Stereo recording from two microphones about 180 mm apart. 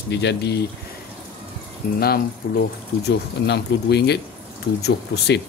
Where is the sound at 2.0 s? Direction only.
60° left (ahead or behind).